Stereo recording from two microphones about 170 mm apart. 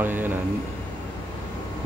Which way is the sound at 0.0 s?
10° right (ahead or behind).